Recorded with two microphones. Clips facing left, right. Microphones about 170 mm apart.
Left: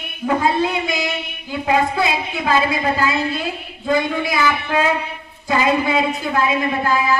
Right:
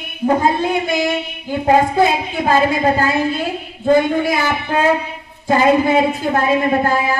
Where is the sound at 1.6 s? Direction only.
45° right (ahead or behind).